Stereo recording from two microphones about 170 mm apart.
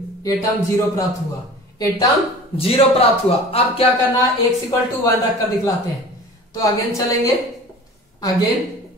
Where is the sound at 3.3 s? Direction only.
35° left (ahead or behind).